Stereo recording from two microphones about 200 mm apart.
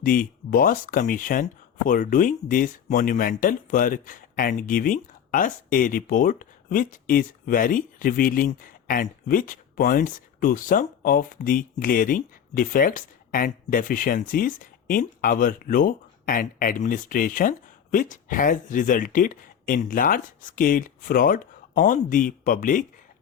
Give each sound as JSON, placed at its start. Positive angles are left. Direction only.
{"t": 0.0, "sound": "speech", "side_deg": 45}